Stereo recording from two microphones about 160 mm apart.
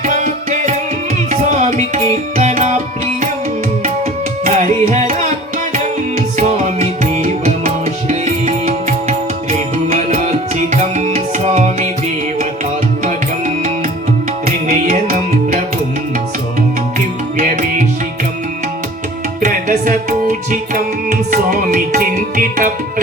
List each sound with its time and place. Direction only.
0.0 s music: 50° right (ahead or behind)
1.3 s tabla: 50° right (ahead or behind)
2.4 s music: 45° right (ahead or behind)
4.4 s music: 50° right (ahead or behind)
14.4 s music: 45° right (ahead or behind)
17.3 s music: 50° right (ahead or behind)
19.4 s music: 55° right (ahead or behind)